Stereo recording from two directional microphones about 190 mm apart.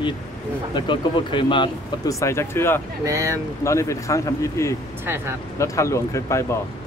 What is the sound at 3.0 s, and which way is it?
Speech, 15° right (ahead or behind).